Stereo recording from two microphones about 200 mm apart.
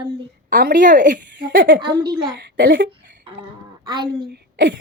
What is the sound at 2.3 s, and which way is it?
Speech, 50° right (ahead or behind).